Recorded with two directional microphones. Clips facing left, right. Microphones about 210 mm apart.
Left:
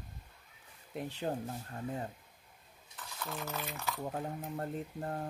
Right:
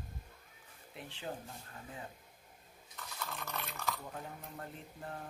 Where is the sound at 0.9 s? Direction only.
45° left (ahead or behind).